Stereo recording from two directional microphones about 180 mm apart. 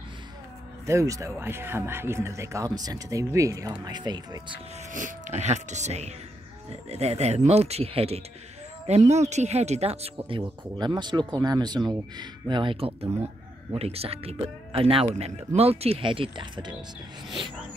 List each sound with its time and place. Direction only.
0.8 s speech: 15° right (ahead or behind)
4.9 s speech: 45° right (ahead or behind); by 16.7 s 25° right (ahead or behind)